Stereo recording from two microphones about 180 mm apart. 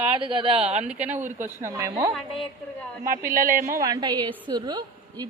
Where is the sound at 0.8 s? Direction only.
5° right (ahead or behind).